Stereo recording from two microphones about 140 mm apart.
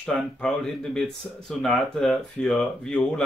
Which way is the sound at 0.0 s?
5° left (ahead or behind).